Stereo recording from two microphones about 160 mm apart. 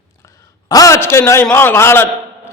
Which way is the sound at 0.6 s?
20° left (ahead or behind).